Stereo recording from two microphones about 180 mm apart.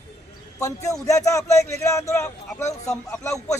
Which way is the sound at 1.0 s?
20° left (ahead or behind).